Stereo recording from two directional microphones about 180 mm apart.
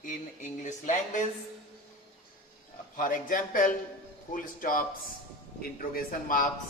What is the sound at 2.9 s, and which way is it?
Speech, 50° left (ahead or behind).